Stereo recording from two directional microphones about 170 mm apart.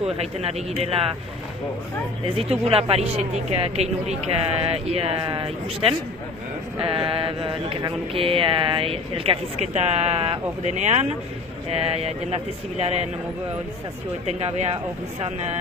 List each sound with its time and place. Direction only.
0.0 s mantra: 35° right (ahead or behind)
2.6 s mantra: 35° right (ahead or behind)
14.2 s mantra: 40° right (ahead or behind)